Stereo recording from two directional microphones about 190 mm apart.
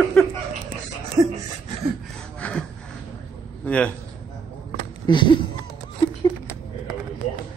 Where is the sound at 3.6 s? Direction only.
5° left (ahead or behind).